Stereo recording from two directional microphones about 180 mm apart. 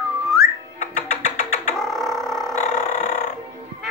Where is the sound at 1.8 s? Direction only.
Centre (ahead or behind).